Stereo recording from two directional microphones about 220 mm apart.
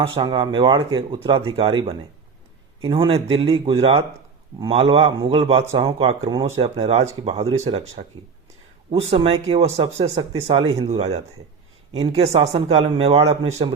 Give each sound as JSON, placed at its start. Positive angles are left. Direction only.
{"t": 0.0, "sound": "speech", "side_deg": -20}